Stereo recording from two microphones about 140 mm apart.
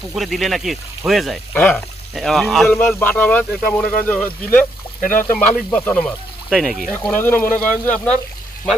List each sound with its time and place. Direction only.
0.2 s speech: centre (ahead or behind)
1.5 s speech: 10° left (ahead or behind)
2.7 s speech: 15° left (ahead or behind)
4.9 s speech: 75° left (ahead or behind)
5.7 s speech: 10° left (ahead or behind)
7.1 s speech: 15° left (ahead or behind)
7.4 s speech: 70° left (ahead or behind)
7.9 s speech: 10° left (ahead or behind)